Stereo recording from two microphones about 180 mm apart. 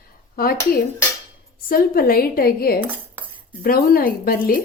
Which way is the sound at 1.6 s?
55° left (ahead or behind).